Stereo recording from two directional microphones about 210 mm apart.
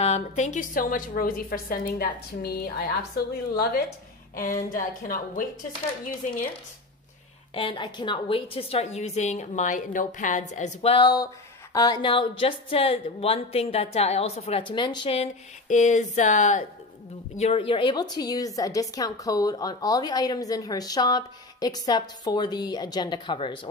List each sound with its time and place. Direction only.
0.0 s a woman's voice: 35° left (ahead or behind)
7.5 s a woman's voice: 25° left (ahead or behind)